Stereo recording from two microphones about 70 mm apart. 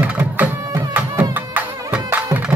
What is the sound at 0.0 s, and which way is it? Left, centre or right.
Music, right.